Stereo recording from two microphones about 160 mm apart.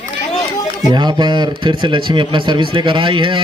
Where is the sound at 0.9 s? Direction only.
30° right (ahead or behind).